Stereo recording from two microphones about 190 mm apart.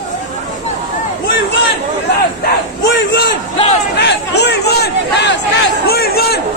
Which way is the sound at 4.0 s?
60° left (ahead or behind).